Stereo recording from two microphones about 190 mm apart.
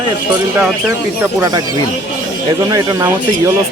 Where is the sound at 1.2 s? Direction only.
15° right (ahead or behind).